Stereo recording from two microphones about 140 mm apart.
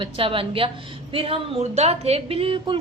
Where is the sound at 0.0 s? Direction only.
40° right (ahead or behind).